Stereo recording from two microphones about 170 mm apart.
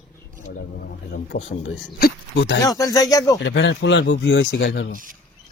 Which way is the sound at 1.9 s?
75° left (ahead or behind).